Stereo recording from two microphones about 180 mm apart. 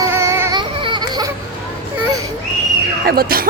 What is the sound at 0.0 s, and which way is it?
Baby cry, 15° right (ahead or behind).